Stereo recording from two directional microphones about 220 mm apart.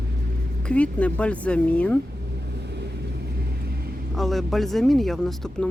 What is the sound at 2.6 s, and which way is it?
Vehicle, 50° right (ahead or behind).